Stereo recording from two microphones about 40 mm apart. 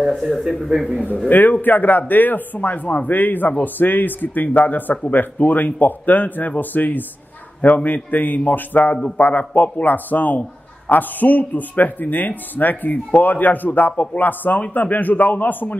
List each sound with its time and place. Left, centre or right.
0.4 s a man's voice: centre
1.3 s speech: left
8.9 s speech: left
9.2 s speech: left